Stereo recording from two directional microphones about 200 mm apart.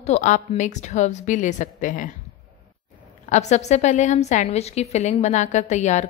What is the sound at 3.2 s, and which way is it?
A woman's voice, 35° left (ahead or behind).